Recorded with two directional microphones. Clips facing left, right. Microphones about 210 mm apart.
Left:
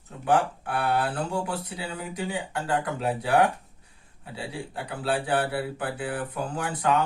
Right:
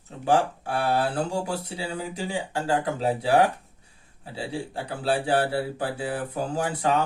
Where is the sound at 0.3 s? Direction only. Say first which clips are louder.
Right 1 dB; 30° right (ahead or behind).